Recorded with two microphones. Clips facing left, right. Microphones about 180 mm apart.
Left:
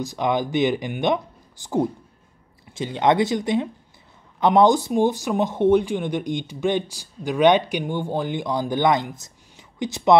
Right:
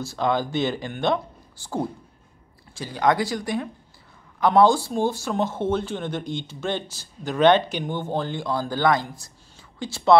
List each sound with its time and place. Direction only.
0.0 s speech: 15° left (ahead or behind)